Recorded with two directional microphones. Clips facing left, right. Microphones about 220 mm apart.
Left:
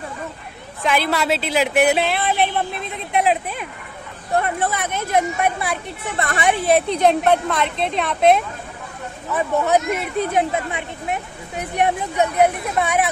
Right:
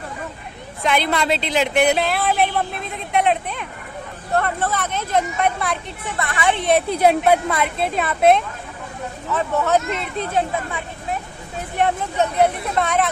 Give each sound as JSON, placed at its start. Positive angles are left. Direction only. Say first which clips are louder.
{"t": 0.8, "sound": "speech", "louder": "even", "side_deg": 5}
{"t": 4.4, "sound": "speech", "louder": "even", "side_deg": 15}
{"t": 6.1, "sound": "a woman's voice", "louder": "left 3 dB", "side_deg": 30}
{"t": 6.5, "sound": "speech", "louder": "left 1 dB", "side_deg": 5}
{"t": 6.9, "sound": "a woman's voice", "louder": "even", "side_deg": -5}
{"t": 9.3, "sound": "speech", "louder": "left 1 dB", "side_deg": 15}